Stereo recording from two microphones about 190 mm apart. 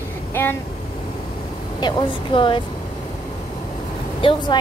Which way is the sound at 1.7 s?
25° left (ahead or behind).